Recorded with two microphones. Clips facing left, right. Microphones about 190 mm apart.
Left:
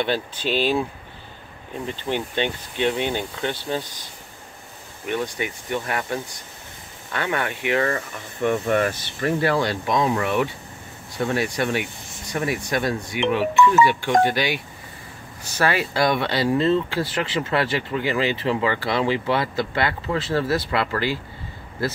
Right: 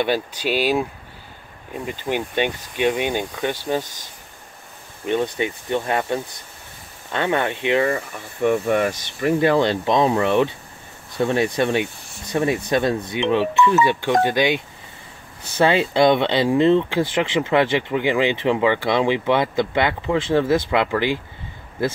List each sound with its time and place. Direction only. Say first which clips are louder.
0.0 s speech: right 3 dB; 10° right (ahead or behind)
1.9 s speech: right 2 dB; 15° right (ahead or behind)
3.8 s speech: left 1 dB; 45° right (ahead or behind)
5.0 s speech: right 5 dB; 20° right (ahead or behind)
15.6 s speech: right 5 dB; 20° right (ahead or behind)